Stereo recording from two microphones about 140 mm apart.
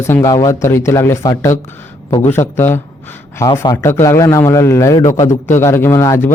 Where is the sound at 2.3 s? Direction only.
15° left (ahead or behind).